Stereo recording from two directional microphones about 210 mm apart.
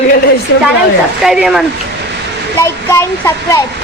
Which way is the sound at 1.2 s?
Centre (ahead or behind).